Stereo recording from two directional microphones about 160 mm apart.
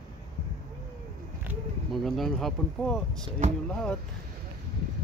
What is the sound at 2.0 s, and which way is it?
Speech, centre (ahead or behind).